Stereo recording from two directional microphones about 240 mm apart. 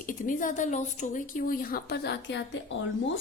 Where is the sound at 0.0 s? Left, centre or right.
Left.